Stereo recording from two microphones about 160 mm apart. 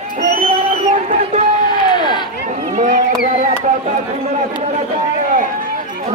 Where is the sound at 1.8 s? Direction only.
30° left (ahead or behind).